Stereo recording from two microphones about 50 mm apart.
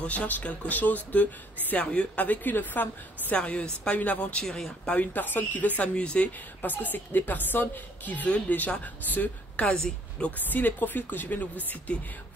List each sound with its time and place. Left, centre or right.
0.0 s speech: left
2.2 s a woman's voice: left
3.3 s speech: left
4.5 s speech: centre
4.8 s a woman's voice: left
5.9 s speech: left
6.6 s a woman's voice: left
9.7 s a woman's voice: centre
10.3 s a woman's voice: left